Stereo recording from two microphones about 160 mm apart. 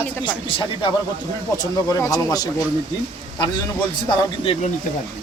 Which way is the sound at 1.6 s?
20° left (ahead or behind).